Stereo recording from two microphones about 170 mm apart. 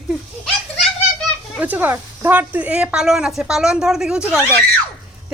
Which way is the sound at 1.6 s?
10° right (ahead or behind).